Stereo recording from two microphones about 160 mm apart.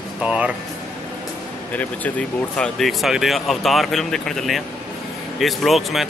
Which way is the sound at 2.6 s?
Centre (ahead or behind).